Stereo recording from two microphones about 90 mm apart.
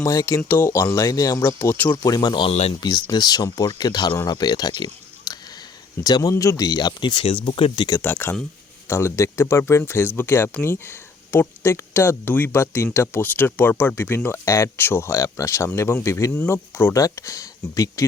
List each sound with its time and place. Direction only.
0.0 s speech: 35° left (ahead or behind)
1.4 s speech: 25° left (ahead or behind)
2.0 s speech: 45° left (ahead or behind)
5.3 s a sound: 40° left (ahead or behind)
6.0 s speech: 45° left (ahead or behind)
6.7 s speech: 55° left (ahead or behind)
8.0 s speech: 20° left (ahead or behind); by 18.0 s 40° left (ahead or behind)